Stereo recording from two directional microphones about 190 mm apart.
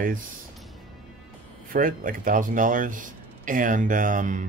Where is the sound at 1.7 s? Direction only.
45° right (ahead or behind).